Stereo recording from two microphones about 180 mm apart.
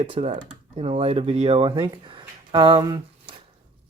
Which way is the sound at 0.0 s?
30° right (ahead or behind).